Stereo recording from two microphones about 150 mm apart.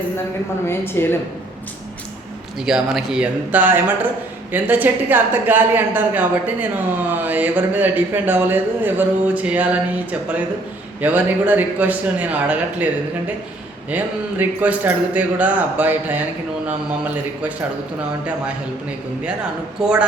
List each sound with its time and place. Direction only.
0.7 s a woman's voice: 15° left (ahead or behind)
2.6 s a woman's voice: 5° right (ahead or behind)
13.9 s a woman's voice: 10° right (ahead or behind)